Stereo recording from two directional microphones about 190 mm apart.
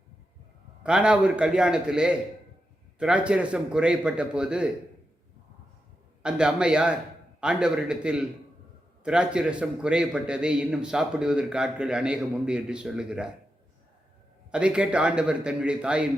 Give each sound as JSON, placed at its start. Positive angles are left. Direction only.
{"t": 0.8, "sound": "a man's voice", "side_deg": -5}
{"t": 6.2, "sound": "a man's voice", "side_deg": -5}
{"t": 14.5, "sound": "a man's voice", "side_deg": -5}